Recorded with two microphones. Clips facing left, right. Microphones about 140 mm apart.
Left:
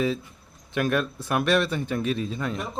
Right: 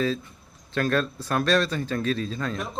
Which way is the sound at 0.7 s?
15° left (ahead or behind).